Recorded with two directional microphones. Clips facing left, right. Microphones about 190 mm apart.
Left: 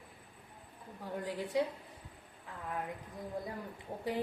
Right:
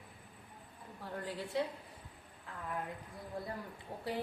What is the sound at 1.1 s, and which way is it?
Speech, 15° left (ahead or behind).